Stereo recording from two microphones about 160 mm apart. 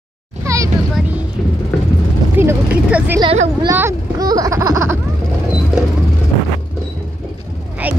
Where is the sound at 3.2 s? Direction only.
25° right (ahead or behind).